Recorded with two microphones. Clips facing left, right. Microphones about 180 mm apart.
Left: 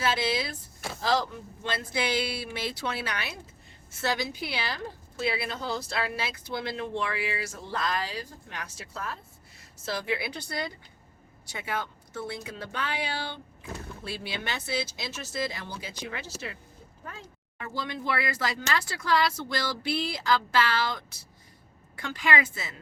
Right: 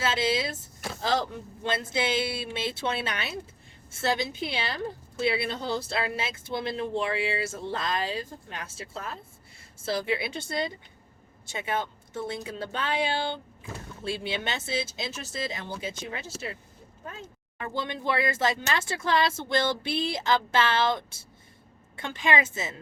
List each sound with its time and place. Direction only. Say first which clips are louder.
0.0 s speech: right 1 dB; 25° right (ahead or behind)
1.6 s speech: right 2 dB; 25° right (ahead or behind)
17.7 s speech: right 3 dB; 20° right (ahead or behind)